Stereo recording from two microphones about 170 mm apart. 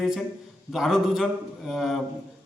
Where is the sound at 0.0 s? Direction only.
Centre (ahead or behind).